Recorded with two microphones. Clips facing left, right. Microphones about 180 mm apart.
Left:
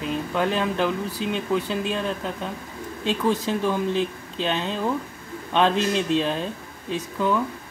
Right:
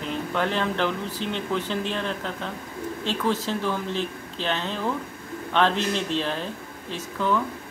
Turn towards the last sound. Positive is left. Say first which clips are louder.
# left 2 dB
turn(degrees=15)  # may be behind; listen again after turning